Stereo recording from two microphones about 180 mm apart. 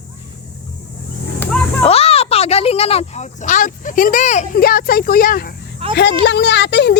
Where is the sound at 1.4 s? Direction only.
10° left (ahead or behind).